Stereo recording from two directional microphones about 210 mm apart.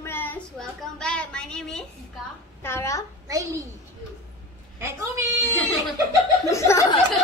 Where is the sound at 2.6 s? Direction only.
10° left (ahead or behind).